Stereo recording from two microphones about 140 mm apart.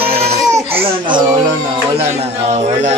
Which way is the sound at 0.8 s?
35° right (ahead or behind).